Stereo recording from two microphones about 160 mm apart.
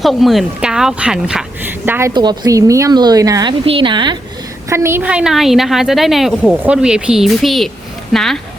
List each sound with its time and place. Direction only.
0.0 s a woman's voice: centre (ahead or behind)
2.1 s a woman's voice: 25° right (ahead or behind)
4.7 s a woman's voice: 15° right (ahead or behind); by 8.4 s centre (ahead or behind)